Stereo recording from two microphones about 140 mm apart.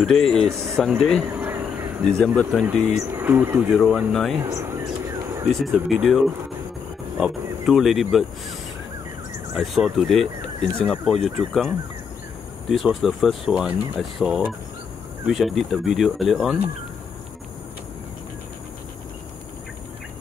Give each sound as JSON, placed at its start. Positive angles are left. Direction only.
{"t": 0.0, "sound": "speech", "side_deg": 5}
{"t": 1.3, "sound": "a sound", "side_deg": -15}
{"t": 2.0, "sound": "speech", "side_deg": 5}
{"t": 3.0, "sound": "speech", "side_deg": -15}
{"t": 3.7, "sound": "speech", "side_deg": 0}
{"t": 4.4, "sound": "speech", "side_deg": -20}
{"t": 5.5, "sound": "speech", "side_deg": 0}
{"t": 9.5, "sound": "speech", "side_deg": 0}